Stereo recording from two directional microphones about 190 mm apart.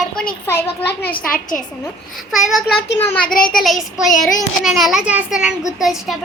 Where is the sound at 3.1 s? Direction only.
50° left (ahead or behind).